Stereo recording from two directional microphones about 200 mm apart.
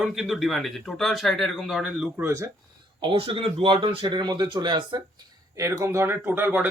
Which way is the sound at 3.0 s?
25° right (ahead or behind).